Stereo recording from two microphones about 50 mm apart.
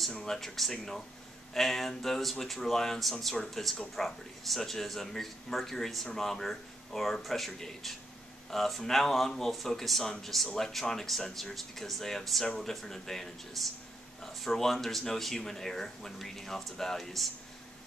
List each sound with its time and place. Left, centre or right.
0.1 s speech: centre